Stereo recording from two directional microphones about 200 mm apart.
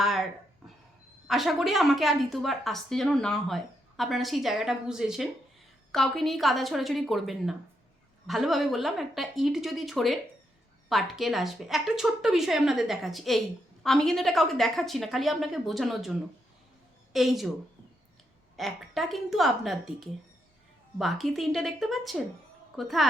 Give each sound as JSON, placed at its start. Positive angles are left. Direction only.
{"t": 0.0, "sound": "a sound", "side_deg": 0}
{"t": 1.3, "sound": "a woman's voice", "side_deg": 0}
{"t": 18.5, "sound": "a woman's voice", "side_deg": 0}
{"t": 21.0, "sound": "a woman's voice", "side_deg": 0}